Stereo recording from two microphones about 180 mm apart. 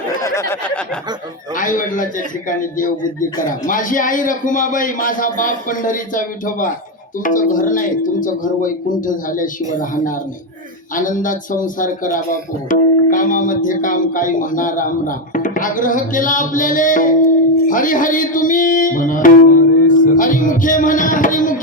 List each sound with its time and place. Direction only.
0.2 s a sound: 15° left (ahead or behind)
1.5 s music: 50° left (ahead or behind)
10.9 s music: 45° left (ahead or behind)